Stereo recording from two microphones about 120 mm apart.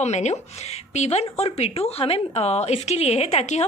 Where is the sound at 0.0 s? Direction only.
70° left (ahead or behind).